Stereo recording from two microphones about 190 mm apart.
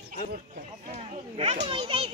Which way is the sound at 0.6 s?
35° right (ahead or behind).